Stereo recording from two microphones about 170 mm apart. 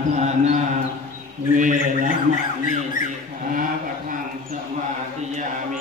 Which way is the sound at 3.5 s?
55° right (ahead or behind).